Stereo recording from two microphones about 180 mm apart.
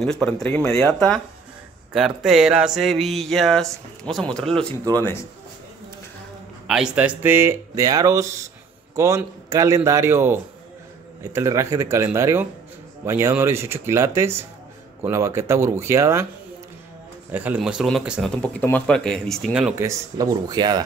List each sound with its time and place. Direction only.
0.0 s speech: 5° left (ahead or behind)
6.7 s speech: 5° right (ahead or behind)
17.3 s speech: 10° right (ahead or behind)
19.7 s speech: 15° right (ahead or behind)